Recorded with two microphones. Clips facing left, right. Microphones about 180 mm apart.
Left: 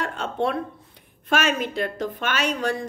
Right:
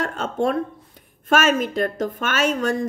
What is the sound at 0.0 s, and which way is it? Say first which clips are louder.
A woman's voice: right 3 dB; 45° right (ahead or behind).